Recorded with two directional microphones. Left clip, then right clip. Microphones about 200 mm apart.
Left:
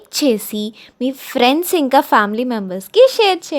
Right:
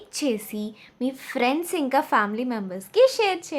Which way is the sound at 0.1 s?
45° left (ahead or behind).